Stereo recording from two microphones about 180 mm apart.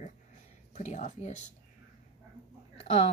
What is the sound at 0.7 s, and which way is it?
Speech, 40° left (ahead or behind).